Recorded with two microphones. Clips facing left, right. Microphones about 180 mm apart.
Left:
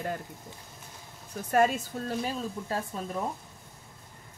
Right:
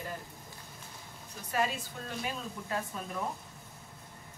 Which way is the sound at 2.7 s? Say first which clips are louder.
Left 2 dB; 35° left (ahead or behind).